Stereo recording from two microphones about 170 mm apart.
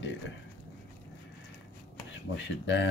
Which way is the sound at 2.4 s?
90° left.